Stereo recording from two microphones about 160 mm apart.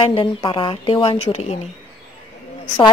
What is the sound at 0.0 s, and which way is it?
Speech, 30° left (ahead or behind).